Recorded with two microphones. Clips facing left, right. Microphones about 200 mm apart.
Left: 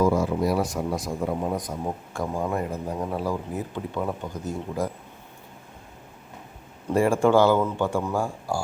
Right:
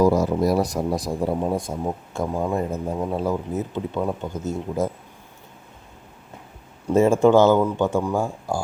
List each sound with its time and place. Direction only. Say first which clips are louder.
0.0 s a man's voice: right 4 dB; 40° right (ahead or behind)
6.9 s speech: right 4 dB; 20° right (ahead or behind)